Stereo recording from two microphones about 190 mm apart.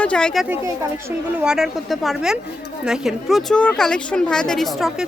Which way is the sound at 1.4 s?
Centre (ahead or behind).